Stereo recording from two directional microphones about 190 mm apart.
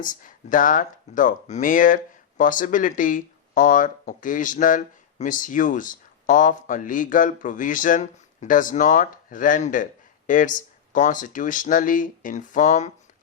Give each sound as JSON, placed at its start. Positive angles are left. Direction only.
{"t": 0.0, "sound": "speech", "side_deg": 45}